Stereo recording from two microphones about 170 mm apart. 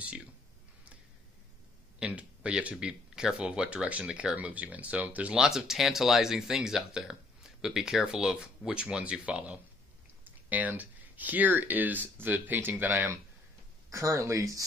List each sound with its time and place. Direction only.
2.0 s speech: 5° right (ahead or behind)